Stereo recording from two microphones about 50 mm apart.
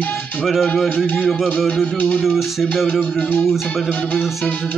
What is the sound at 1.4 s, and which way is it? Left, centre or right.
Music, left.